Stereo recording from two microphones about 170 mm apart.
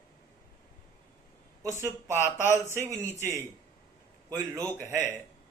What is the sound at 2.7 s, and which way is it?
Speech, 15° right (ahead or behind).